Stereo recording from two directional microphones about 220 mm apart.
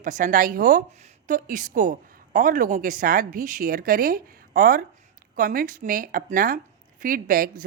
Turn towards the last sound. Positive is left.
turn(degrees=-40)  # may be behind; listen again after turning